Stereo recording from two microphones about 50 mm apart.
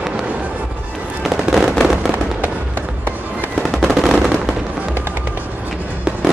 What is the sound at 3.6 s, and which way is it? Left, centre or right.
Fireworks, centre.